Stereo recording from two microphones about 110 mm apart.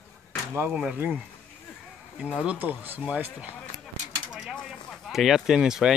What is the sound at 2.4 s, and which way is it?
Speech, 15° right (ahead or behind).